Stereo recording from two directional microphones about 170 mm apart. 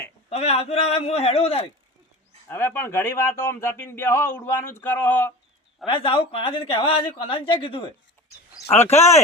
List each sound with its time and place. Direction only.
0.3 s a woman's voice: 35° left (ahead or behind)
2.5 s a man's voice: 15° left (ahead or behind)
5.8 s a woman's voice: 30° left (ahead or behind)